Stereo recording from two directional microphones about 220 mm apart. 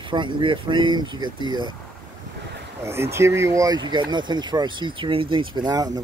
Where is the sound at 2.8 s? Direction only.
10° right (ahead or behind).